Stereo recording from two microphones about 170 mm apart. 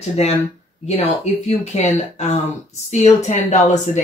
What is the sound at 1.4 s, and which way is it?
Speech, 40° left (ahead or behind).